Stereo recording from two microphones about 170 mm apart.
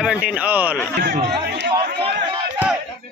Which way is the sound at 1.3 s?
75° right (ahead or behind).